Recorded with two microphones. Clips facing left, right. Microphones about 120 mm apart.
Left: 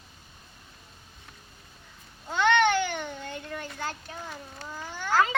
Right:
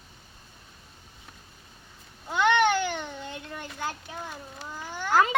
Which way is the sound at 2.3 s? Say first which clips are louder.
Even; 10° right (ahead or behind).